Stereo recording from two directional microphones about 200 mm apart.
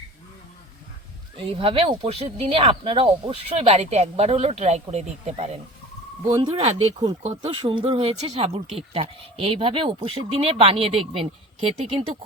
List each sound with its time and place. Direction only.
1.4 s speech: 25° right (ahead or behind)